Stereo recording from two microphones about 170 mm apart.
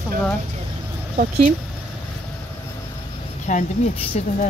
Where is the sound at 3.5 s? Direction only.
45° left (ahead or behind).